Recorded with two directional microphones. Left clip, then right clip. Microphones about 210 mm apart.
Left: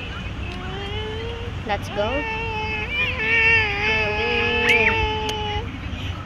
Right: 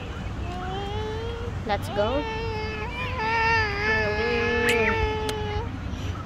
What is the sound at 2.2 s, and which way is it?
Baby cry, 15° right (ahead or behind).